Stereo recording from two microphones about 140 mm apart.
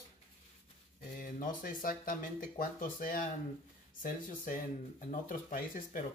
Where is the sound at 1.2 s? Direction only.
85° left.